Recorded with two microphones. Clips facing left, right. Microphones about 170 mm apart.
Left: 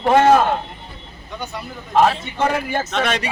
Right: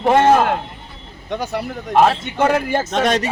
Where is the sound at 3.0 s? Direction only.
40° right (ahead or behind).